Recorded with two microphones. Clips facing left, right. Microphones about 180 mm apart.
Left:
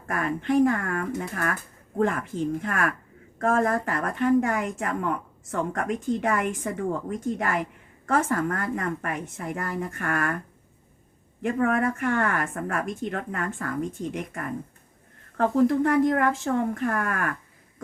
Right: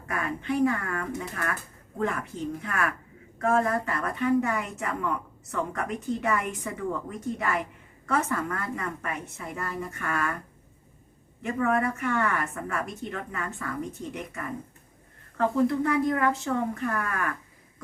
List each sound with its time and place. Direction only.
0.1 s a woman's voice: 50° left (ahead or behind)
2.6 s a woman's voice: 50° left (ahead or behind)
11.4 s a woman's voice: 50° left (ahead or behind)